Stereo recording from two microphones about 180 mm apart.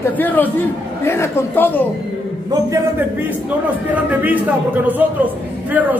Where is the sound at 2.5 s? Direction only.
15° right (ahead or behind).